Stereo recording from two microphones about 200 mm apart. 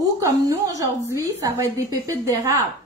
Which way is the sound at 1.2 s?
15° right (ahead or behind).